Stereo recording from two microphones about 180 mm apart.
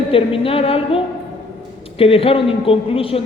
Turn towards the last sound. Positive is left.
turn(degrees=30)  # may be behind; listen again after turning